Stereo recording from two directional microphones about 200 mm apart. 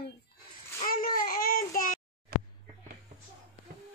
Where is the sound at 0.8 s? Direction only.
45° left (ahead or behind).